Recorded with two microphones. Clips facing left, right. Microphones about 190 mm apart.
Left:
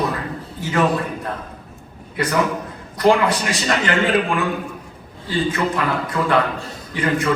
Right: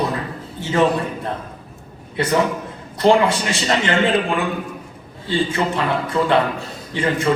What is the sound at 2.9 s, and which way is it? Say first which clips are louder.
A man's voice: right 1 dB; 25° right (ahead or behind).